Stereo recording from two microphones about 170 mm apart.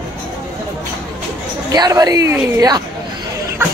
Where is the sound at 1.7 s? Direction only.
20° right (ahead or behind).